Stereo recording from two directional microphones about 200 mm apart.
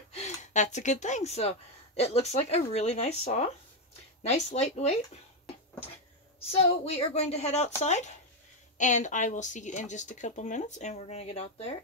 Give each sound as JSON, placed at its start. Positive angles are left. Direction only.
{"t": 0.1, "sound": "speech", "side_deg": 35}
{"t": 6.5, "sound": "speech", "side_deg": 30}